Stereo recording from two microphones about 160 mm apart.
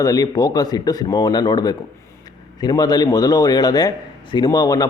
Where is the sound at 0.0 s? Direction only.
25° left (ahead or behind).